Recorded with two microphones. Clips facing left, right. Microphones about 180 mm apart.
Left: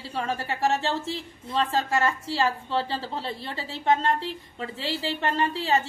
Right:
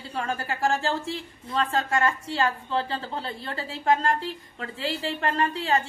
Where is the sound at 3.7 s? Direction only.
25° left (ahead or behind).